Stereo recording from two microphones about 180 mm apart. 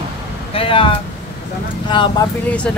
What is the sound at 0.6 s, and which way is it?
Speech, 30° left (ahead or behind).